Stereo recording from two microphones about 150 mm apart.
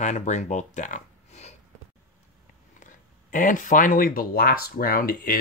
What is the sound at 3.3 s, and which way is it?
Speech, 65° left (ahead or behind).